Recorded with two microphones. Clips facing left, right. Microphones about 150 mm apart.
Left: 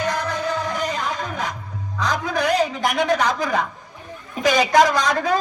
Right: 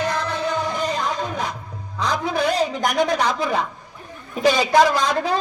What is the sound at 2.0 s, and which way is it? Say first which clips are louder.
A man's voice: right 1 dB; 30° right (ahead or behind).